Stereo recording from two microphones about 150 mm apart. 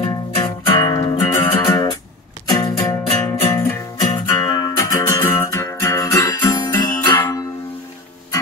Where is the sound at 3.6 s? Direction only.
15° left (ahead or behind).